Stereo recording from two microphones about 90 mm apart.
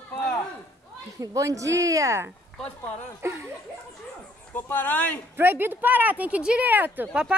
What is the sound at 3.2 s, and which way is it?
Chuckle, 30° right (ahead or behind).